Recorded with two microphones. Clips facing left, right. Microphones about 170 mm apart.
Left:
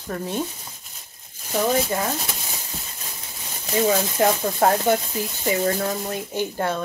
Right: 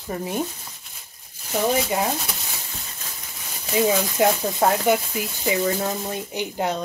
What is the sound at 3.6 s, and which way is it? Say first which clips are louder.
Speech: even; 10° right (ahead or behind).